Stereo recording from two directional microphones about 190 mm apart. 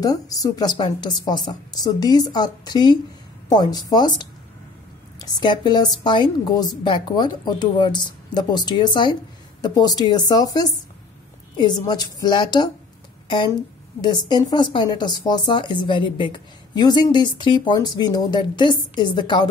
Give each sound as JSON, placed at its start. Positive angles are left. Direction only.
{"t": 0.0, "sound": "speech", "side_deg": 20}